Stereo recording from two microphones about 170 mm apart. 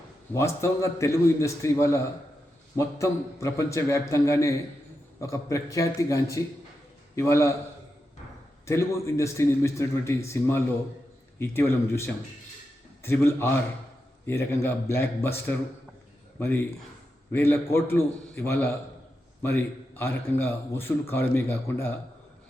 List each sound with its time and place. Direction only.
0.3 s a man's voice: 15° left (ahead or behind)
8.6 s a man's voice: 15° left (ahead or behind)